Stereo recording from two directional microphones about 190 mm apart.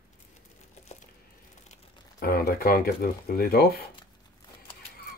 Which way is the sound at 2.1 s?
55° left (ahead or behind).